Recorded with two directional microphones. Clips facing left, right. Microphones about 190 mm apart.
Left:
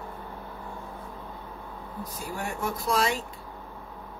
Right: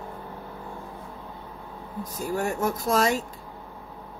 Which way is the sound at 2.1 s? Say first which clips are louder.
Right 8 dB; 45° right (ahead or behind).